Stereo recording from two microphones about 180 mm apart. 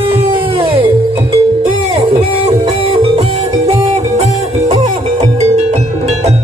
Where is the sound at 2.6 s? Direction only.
35° right (ahead or behind).